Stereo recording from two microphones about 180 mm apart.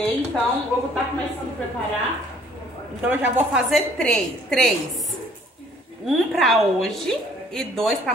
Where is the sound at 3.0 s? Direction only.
10° right (ahead or behind).